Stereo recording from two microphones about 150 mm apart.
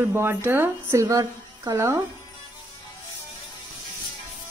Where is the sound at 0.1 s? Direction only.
15° right (ahead or behind).